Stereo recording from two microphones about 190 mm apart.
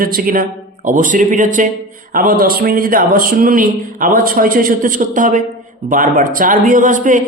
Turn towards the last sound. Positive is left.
turn(degrees=-45)  # may be behind; listen again after turning